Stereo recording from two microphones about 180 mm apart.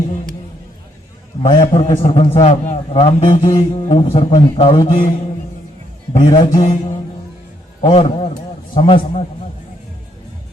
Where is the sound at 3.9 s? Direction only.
30° left (ahead or behind).